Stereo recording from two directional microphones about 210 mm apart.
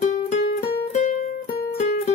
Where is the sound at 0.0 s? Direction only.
35° left (ahead or behind).